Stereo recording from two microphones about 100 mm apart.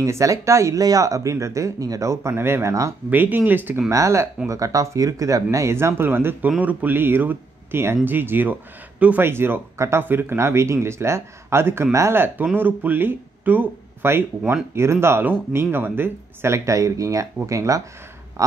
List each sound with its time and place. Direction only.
0.0 s speech: 30° right (ahead or behind)
3.1 s speech: 20° right (ahead or behind)
3.9 s speech: 30° right (ahead or behind)